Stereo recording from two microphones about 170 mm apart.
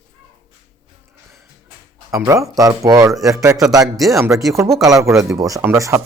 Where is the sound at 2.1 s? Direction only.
20° right (ahead or behind).